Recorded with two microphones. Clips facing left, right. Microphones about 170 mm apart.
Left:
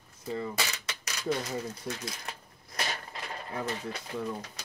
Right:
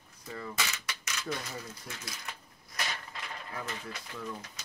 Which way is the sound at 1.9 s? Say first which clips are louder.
Left 9 dB; 30° left (ahead or behind).